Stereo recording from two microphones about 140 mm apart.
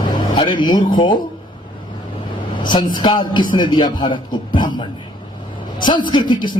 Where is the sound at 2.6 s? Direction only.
35° left (ahead or behind).